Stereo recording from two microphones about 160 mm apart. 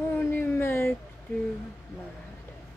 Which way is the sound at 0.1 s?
10° left (ahead or behind).